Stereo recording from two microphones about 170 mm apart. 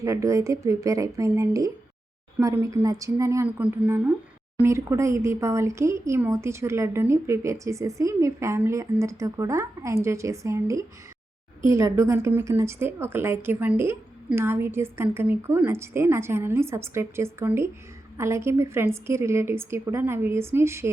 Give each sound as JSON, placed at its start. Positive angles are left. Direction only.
{"t": 0.0, "sound": "speech", "side_deg": -20}